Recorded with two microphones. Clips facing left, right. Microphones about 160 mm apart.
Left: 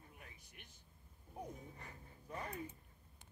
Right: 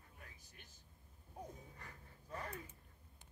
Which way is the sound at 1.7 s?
20° left (ahead or behind).